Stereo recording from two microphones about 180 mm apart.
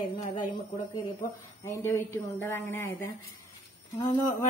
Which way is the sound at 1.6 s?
15° left (ahead or behind).